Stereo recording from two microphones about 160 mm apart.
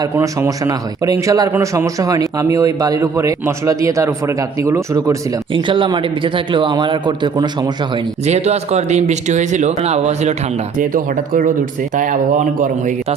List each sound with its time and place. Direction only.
0.0 s a man's voice: 20° right (ahead or behind)
5.6 s a man's voice: 30° right (ahead or behind)
8.2 s speech: 45° right (ahead or behind)
10.8 s speech: 55° right (ahead or behind)
12.5 s speech: 55° right (ahead or behind)